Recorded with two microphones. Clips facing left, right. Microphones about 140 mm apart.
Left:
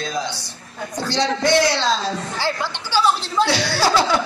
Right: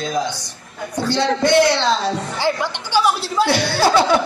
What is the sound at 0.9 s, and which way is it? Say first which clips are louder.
Speech: right 3 dB; 55° right (ahead or behind).